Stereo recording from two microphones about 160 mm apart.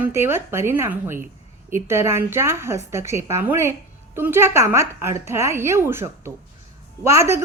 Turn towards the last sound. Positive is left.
turn(degrees=-15)  # may be behind; listen again after turning